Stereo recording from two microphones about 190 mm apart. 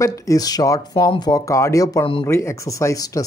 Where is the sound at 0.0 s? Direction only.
15° left (ahead or behind).